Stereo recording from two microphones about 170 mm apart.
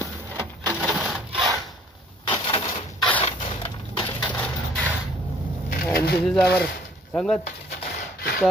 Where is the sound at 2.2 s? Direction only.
30° left (ahead or behind).